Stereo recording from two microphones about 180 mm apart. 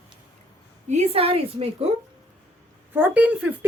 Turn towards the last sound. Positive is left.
turn(degrees=-5)  # may be behind; listen again after turning